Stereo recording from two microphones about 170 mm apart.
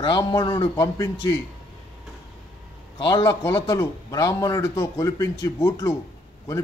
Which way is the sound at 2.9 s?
25° left (ahead or behind).